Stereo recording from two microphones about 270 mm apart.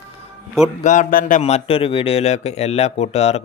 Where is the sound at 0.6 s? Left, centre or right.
Left.